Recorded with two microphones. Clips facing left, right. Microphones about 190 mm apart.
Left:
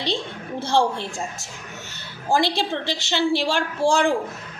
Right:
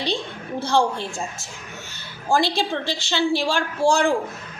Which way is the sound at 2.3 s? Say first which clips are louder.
Even; 20° left (ahead or behind).